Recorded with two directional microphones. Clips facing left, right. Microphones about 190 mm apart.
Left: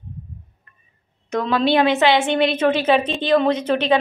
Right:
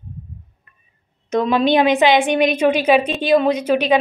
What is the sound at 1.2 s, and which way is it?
A woman's voice, 20° right (ahead or behind).